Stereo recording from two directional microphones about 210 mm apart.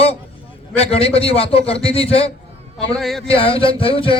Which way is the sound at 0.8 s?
30° left (ahead or behind).